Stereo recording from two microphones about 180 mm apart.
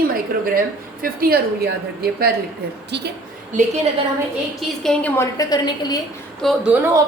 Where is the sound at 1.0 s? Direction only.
55° right (ahead or behind).